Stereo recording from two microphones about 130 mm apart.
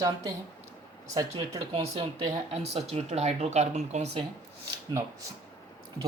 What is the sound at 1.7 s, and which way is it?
Speech, 50° right (ahead or behind).